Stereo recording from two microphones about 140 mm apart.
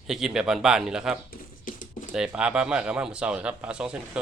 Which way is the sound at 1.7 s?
70° left (ahead or behind).